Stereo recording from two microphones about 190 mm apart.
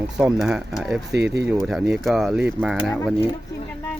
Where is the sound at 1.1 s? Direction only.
60° right (ahead or behind).